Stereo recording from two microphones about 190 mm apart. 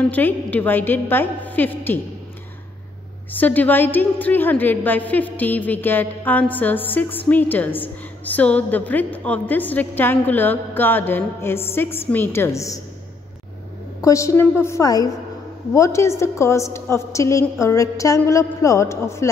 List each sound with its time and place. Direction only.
0.1 s a woman's voice: 10° left (ahead or behind)
3.3 s a woman's voice: 10° left (ahead or behind)
14.0 s a woman's voice: 15° left (ahead or behind)